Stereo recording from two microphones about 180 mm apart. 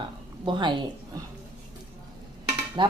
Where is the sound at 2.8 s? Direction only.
25° right (ahead or behind).